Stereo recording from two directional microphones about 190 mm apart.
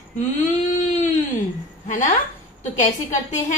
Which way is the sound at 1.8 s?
40° left (ahead or behind).